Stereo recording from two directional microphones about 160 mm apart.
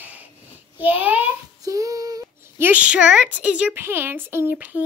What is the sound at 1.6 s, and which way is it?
Speech, 20° right (ahead or behind).